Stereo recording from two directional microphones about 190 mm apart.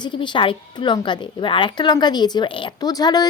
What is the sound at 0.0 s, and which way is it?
Speech, 25° left (ahead or behind).